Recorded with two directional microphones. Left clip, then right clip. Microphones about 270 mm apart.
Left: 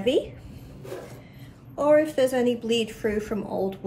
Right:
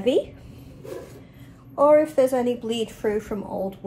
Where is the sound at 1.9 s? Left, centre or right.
Centre.